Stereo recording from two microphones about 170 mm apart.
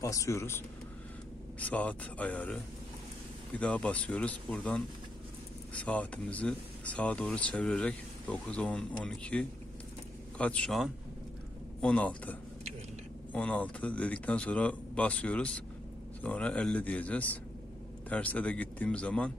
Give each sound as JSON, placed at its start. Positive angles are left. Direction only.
{"t": 0.0, "sound": "speech", "side_deg": 20}